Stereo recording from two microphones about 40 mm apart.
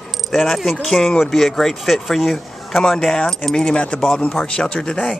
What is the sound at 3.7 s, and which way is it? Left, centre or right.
Speech, left.